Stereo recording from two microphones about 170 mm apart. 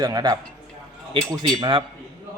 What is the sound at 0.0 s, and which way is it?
Speech, 20° right (ahead or behind).